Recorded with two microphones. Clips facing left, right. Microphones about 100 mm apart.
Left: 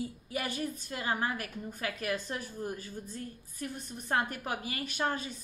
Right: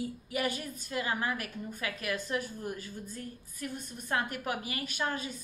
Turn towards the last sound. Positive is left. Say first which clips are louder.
# left 1 dB
turn(degrees=35)  # may be behind; listen again after turning